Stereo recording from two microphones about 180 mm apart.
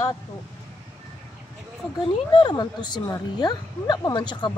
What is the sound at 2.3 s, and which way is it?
Speech, 25° left (ahead or behind).